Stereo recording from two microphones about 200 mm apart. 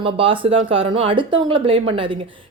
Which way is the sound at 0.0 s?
25° right (ahead or behind).